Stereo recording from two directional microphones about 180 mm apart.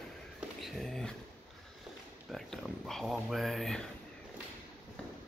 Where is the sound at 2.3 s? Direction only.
Centre (ahead or behind).